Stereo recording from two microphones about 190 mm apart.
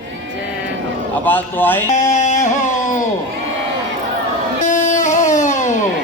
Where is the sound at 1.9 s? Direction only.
40° left (ahead or behind).